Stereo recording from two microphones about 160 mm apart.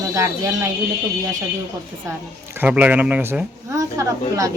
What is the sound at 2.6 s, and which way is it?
A woman's voice, 10° right (ahead or behind).